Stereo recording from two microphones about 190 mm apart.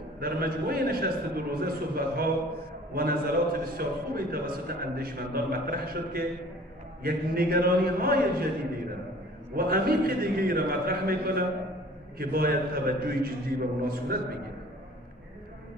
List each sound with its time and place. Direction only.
0.2 s a man's voice: 50° right (ahead or behind)
9.6 s a man's voice: 50° right (ahead or behind)